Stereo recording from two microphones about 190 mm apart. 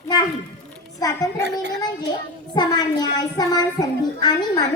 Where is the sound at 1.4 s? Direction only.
65° right (ahead or behind).